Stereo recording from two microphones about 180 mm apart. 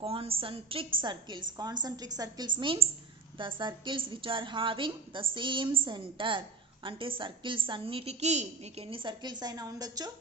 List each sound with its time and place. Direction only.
0.0 s a woman's voice: 30° right (ahead or behind)